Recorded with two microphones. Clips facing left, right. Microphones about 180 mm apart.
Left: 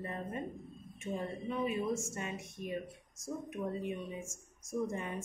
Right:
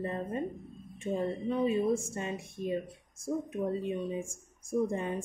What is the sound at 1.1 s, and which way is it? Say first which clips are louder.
Speech: right 6 dB; 35° right (ahead or behind).